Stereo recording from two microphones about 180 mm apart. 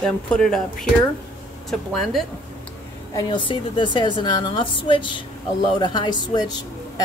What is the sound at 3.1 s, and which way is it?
A woman's voice, 25° left (ahead or behind).